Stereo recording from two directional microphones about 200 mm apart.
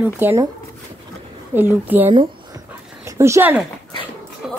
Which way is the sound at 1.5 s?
10° right (ahead or behind).